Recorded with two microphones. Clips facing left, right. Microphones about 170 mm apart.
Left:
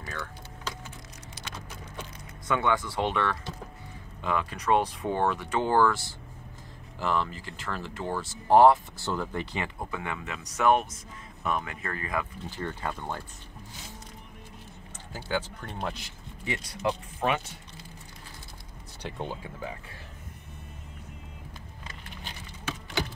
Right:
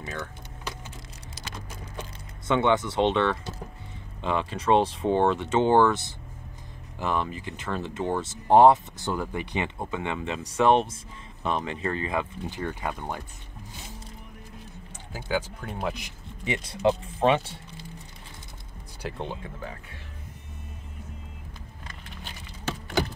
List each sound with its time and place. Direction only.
0.0 s speech: 20° right (ahead or behind)
2.4 s speech: 25° right (ahead or behind)
15.1 s speech: 10° right (ahead or behind); by 17.6 s 30° right (ahead or behind)
19.0 s speech: centre (ahead or behind)